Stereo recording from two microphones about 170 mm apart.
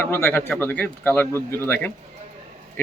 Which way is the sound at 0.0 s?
10° left (ahead or behind).